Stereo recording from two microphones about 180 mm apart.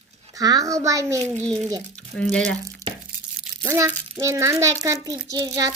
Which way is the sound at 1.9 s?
5° left (ahead or behind).